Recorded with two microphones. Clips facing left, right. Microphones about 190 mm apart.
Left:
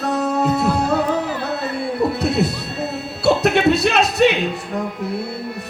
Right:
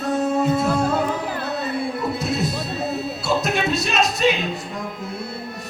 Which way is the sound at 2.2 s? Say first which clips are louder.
Left 4 dB; 65° left (ahead or behind).